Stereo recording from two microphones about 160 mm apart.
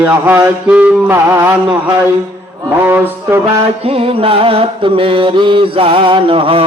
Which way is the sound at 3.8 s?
35° right (ahead or behind).